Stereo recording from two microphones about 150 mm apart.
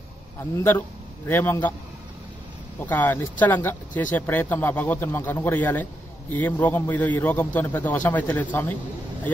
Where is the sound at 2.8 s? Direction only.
10° left (ahead or behind).